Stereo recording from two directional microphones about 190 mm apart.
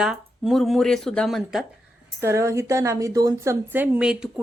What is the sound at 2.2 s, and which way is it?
A woman's voice, 15° right (ahead or behind).